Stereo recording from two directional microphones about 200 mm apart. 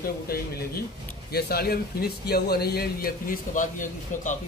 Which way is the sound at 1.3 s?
50° left (ahead or behind).